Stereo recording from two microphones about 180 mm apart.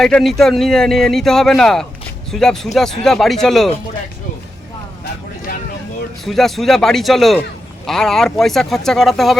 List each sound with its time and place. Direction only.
0.0 s a man's voice: centre (ahead or behind)
6.2 s a man's voice: centre (ahead or behind)